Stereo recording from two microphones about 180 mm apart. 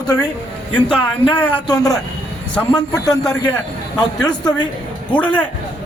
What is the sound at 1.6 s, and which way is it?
Speech, 20° left (ahead or behind).